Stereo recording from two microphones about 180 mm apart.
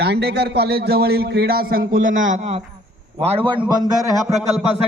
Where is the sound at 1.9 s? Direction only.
90° right.